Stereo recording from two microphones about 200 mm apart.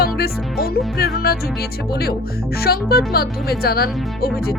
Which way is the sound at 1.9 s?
50° left (ahead or behind).